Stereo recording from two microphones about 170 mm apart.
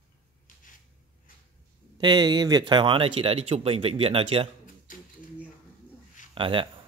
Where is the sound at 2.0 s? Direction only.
25° right (ahead or behind).